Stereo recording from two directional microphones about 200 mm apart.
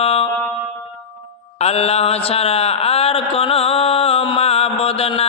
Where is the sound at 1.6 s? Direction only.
30° left (ahead or behind).